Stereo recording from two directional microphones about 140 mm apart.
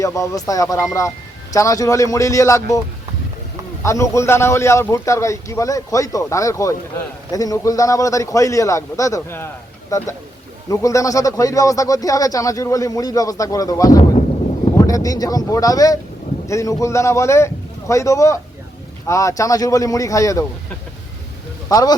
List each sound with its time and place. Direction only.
0.0 s speech: 25° left (ahead or behind)
3.8 s speech: 20° left (ahead or behind)
21.7 s speech: 25° left (ahead or behind)